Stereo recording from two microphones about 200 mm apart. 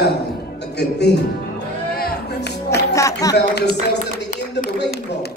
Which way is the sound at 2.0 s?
50° left (ahead or behind).